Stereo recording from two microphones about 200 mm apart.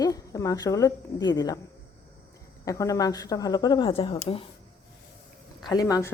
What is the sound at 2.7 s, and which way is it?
Speech, 15° left (ahead or behind).